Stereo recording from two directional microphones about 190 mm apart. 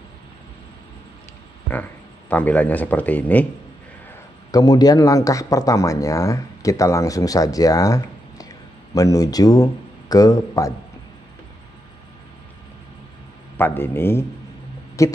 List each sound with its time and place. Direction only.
1.7 s speech: 10° left (ahead or behind)
4.5 s speech: 20° left (ahead or behind)
13.6 s speech: 10° left (ahead or behind)
15.0 s a sound: 15° left (ahead or behind)